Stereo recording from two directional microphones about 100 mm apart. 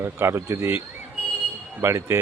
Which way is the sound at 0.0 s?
25° right (ahead or behind).